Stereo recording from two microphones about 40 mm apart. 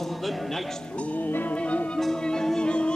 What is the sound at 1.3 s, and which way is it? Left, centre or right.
Music, left.